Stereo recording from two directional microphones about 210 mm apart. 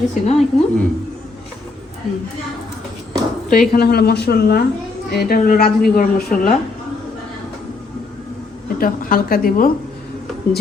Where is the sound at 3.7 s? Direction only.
50° left (ahead or behind).